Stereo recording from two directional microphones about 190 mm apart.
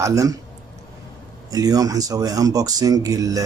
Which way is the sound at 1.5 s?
20° right (ahead or behind).